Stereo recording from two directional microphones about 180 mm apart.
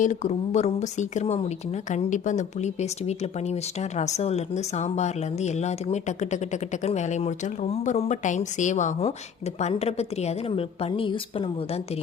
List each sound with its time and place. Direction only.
0.0 s speech: 40° left (ahead or behind)